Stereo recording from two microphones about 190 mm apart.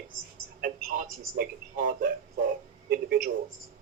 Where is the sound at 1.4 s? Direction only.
50° right (ahead or behind).